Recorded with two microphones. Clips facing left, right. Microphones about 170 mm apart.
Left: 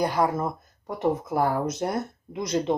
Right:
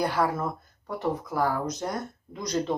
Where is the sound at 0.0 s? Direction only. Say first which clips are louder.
Left 2 dB; 15° left (ahead or behind).